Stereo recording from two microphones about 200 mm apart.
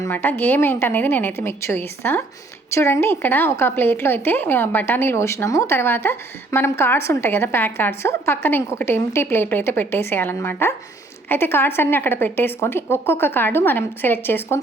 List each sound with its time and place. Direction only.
0.0 s a woman's voice: 10° left (ahead or behind)